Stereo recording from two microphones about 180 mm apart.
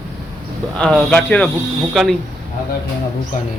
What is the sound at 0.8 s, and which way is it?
Speech, centre (ahead or behind).